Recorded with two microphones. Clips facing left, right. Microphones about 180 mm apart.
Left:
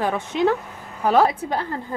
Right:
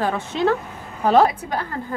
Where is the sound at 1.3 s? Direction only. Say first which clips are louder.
Left 1 dB; 25° left (ahead or behind).